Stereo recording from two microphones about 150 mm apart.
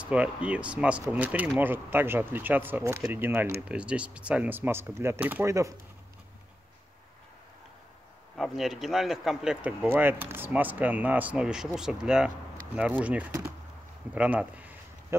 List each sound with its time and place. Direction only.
0.0 s speech: 10° right (ahead or behind)
8.4 s speech: centre (ahead or behind)
14.1 s a sound: 10° right (ahead or behind)